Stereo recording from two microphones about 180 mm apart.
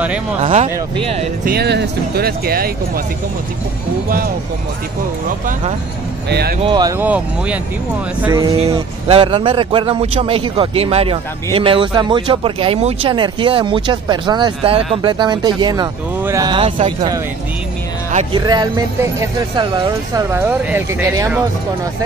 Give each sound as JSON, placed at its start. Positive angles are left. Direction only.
{"t": 0.4, "sound": "speech", "side_deg": -35}
{"t": 1.4, "sound": "speech", "side_deg": -65}
{"t": 6.6, "sound": "a man's voice", "side_deg": -25}
{"t": 7.0, "sound": "speech", "side_deg": -10}
{"t": 8.6, "sound": "a man's voice", "side_deg": -30}
{"t": 18.5, "sound": "a man's voice", "side_deg": -20}
{"t": 20.2, "sound": "speech", "side_deg": -10}